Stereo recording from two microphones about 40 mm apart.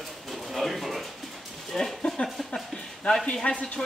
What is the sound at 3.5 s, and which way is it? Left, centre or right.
Speech, left.